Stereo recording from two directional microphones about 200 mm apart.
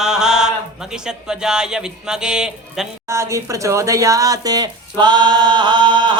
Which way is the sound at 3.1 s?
15° right (ahead or behind).